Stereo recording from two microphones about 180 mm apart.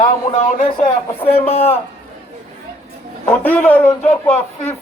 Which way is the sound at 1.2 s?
35° left (ahead or behind).